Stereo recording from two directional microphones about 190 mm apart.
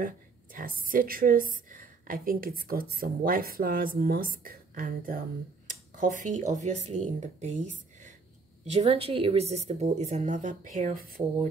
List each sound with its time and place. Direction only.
0.0 s a woman's voice: 45° right (ahead or behind)